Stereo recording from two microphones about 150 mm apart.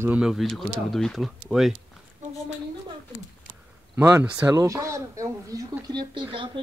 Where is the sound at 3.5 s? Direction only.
20° right (ahead or behind).